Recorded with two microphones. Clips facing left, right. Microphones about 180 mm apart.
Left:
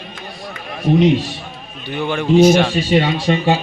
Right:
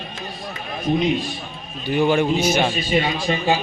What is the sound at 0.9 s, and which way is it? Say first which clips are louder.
Speech: left 8 dB; 80° left.